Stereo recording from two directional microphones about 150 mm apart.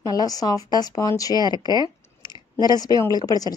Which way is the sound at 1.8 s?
30° left (ahead or behind).